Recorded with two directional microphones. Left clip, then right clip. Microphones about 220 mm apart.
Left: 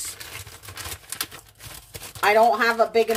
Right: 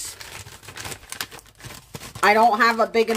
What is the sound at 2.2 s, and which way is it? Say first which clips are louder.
Speech: right 2 dB; 45° right (ahead or behind).